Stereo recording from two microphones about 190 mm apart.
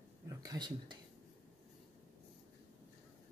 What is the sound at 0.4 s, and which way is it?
Speech, 20° right (ahead or behind).